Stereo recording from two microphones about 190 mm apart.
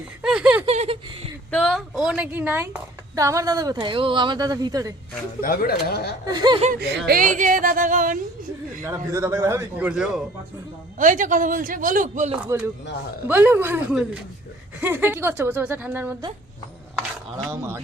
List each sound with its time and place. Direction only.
0.2 s speech: 5° right (ahead or behind)
0.6 s a sound: 30° right (ahead or behind)
1.5 s a woman's voice: 5° left (ahead or behind); by 4.9 s 20° right (ahead or behind)
5.4 s speech: 50° left (ahead or behind)
6.2 s a woman's voice: 20° right (ahead or behind)
7.1 s a man's voice: 45° right (ahead or behind)
8.8 s a man's voice: 15° right (ahead or behind)
10.9 s a man's voice: 45° right (ahead or behind)
12.4 s a man's voice: 10° right (ahead or behind)
17.3 s a man's voice: 15° right (ahead or behind)